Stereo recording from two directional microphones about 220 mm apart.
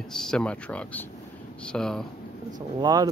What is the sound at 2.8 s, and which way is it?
Speech, 15° right (ahead or behind).